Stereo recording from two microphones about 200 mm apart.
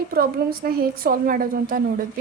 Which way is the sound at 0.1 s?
45° right (ahead or behind).